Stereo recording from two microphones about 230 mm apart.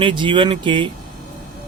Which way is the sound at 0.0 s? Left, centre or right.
Right.